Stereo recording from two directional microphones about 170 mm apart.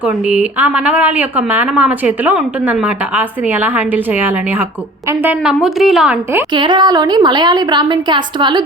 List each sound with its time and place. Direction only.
0.0 s a woman's voice: 10° right (ahead or behind)
6.5 s a woman's voice: 25° right (ahead or behind)